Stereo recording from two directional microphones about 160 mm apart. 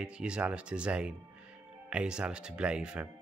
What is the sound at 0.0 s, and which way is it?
Speech, 5° right (ahead or behind).